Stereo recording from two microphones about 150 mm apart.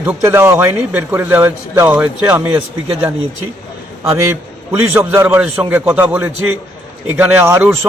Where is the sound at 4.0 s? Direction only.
20° right (ahead or behind).